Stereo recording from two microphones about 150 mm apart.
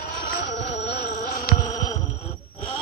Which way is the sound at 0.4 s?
90° left.